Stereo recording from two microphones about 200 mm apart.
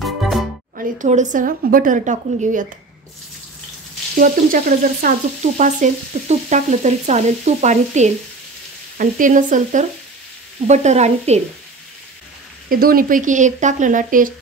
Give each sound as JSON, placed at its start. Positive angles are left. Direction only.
{"t": 0.0, "sound": "music", "side_deg": 0}
{"t": 0.7, "sound": "frying", "side_deg": -40}
{"t": 4.2, "sound": "frying", "side_deg": -45}
{"t": 12.6, "sound": "frying", "side_deg": -45}